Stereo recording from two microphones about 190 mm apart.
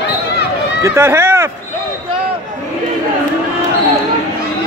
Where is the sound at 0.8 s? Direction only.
15° right (ahead or behind).